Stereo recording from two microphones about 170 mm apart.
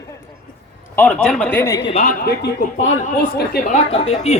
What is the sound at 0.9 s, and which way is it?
Speech, 10° left (ahead or behind).